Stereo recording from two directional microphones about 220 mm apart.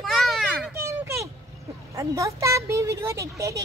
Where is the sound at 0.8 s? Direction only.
15° right (ahead or behind).